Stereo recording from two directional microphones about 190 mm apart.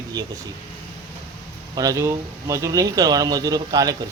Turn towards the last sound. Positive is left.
turn(degrees=-20)  # may be behind; listen again after turning